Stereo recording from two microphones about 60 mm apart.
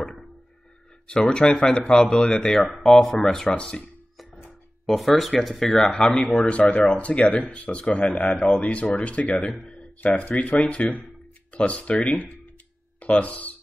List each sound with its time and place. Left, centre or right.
0.0 s a sound: centre
1.0 s speech: centre
4.8 s speech: centre
9.9 s speech: left